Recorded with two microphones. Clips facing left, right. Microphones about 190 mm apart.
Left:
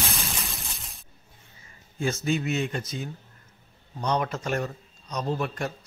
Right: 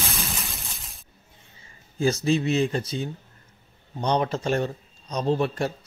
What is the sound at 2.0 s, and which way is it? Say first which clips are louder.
Speech: right 4 dB; 35° right (ahead or behind).